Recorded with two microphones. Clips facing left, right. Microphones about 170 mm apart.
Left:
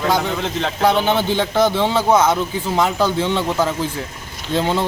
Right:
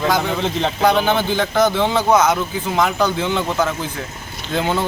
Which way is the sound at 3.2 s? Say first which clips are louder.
Left 1 dB; centre (ahead or behind).